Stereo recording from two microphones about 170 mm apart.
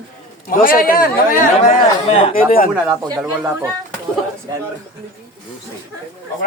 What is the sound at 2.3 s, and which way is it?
Speech, 55° left (ahead or behind).